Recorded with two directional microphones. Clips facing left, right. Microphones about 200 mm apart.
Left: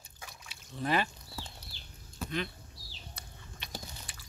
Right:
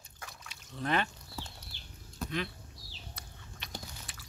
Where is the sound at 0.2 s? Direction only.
5° left (ahead or behind).